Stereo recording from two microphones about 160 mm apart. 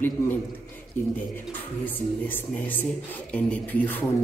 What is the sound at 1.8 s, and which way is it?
A man's voice, 10° left (ahead or behind).